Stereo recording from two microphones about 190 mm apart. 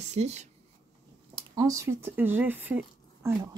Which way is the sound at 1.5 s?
15° right (ahead or behind).